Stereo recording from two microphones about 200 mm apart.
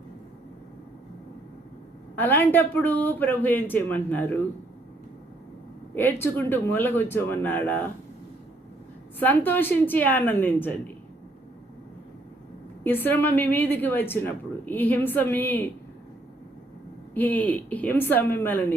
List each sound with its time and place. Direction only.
2.1 s speech: 10° left (ahead or behind)
5.9 s speech: 10° left (ahead or behind)
9.1 s speech: 10° left (ahead or behind)
12.8 s speech: 10° left (ahead or behind)
17.2 s speech: 10° left (ahead or behind)